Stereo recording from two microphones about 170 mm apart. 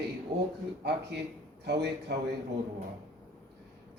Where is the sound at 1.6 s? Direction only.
75° right (ahead or behind).